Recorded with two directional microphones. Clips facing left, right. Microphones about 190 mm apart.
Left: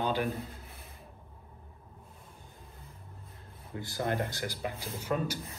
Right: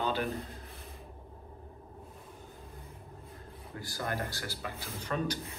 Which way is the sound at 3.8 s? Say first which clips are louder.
Left 4 dB; 20° left (ahead or behind).